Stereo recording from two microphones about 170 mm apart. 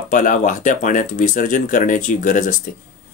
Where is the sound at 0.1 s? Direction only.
50° left (ahead or behind).